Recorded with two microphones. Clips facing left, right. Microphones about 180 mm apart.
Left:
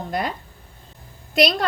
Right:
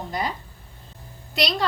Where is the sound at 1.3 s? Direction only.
55° left (ahead or behind).